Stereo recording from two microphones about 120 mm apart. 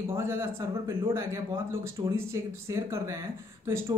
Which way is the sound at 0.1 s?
20° right (ahead or behind).